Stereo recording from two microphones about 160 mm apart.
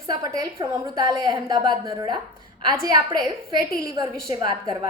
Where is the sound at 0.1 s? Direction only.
25° right (ahead or behind).